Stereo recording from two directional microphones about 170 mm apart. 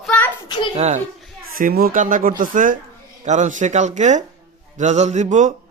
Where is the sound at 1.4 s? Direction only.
60° right (ahead or behind); by 5.5 s 45° right (ahead or behind).